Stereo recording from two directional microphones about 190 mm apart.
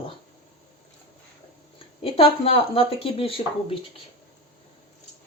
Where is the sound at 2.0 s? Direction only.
30° left (ahead or behind).